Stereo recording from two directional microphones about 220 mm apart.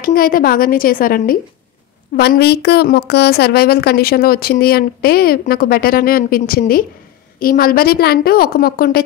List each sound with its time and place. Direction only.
0.0 s a woman's voice: 40° left (ahead or behind)